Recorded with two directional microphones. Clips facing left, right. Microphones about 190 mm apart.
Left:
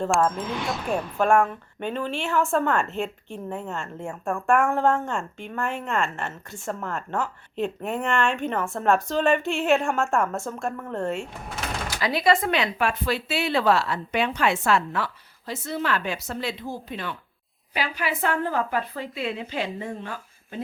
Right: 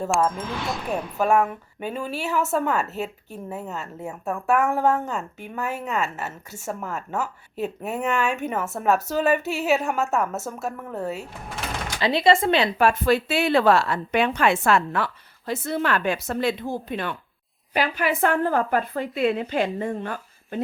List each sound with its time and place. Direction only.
0.0 s a woman's voice: centre (ahead or behind)
11.9 s speech: 25° right (ahead or behind)
12.9 s a woman's voice: 50° right (ahead or behind)